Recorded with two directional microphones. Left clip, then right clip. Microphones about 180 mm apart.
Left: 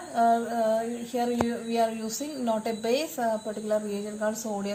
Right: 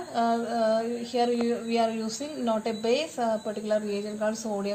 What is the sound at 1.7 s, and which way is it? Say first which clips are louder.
A woman's voice: left 1 dB; 40° right (ahead or behind).